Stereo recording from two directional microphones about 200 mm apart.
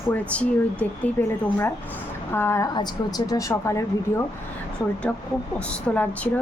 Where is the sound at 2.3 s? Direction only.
10° left (ahead or behind).